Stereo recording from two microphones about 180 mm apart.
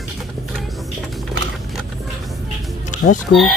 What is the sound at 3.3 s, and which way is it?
Chicken, 70° left (ahead or behind).